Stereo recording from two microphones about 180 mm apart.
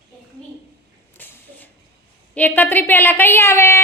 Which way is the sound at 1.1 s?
10° left (ahead or behind).